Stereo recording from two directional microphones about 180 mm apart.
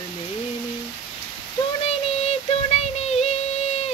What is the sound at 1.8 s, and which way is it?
Music, 35° left (ahead or behind).